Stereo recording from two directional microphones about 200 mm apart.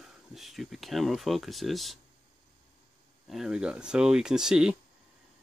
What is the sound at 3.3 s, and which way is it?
Speech, 5° right (ahead or behind).